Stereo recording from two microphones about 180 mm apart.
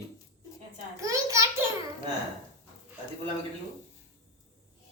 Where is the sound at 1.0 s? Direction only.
15° right (ahead or behind).